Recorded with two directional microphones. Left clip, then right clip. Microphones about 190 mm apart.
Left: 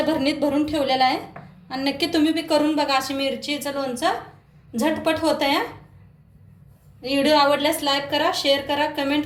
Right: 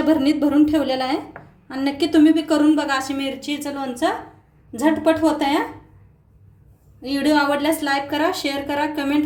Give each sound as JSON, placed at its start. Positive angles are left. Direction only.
{"t": 0.1, "sound": "a woman's voice", "side_deg": -45}
{"t": 7.0, "sound": "a woman's voice", "side_deg": -45}